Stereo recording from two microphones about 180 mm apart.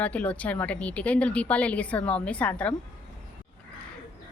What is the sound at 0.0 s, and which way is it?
Speech, 10° left (ahead or behind).